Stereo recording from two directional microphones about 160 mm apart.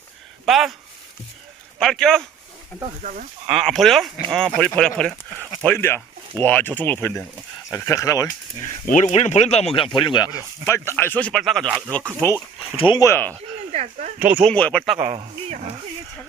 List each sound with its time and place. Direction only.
0.4 s speech: centre (ahead or behind)
1.8 s speech: 5° left (ahead or behind)
3.0 s speech: 55° right (ahead or behind)
3.5 s speech: centre (ahead or behind); by 8.3 s 20° left (ahead or behind)
8.9 s speech: 45° left (ahead or behind); by 12.3 s 10° left (ahead or behind)
12.7 s speech: 30° left (ahead or behind)
13.0 s speech: 15° left (ahead or behind)
13.7 s a sound: 45° right (ahead or behind)
14.2 s speech: 10° right (ahead or behind)
14.4 s speech: 5° left (ahead or behind)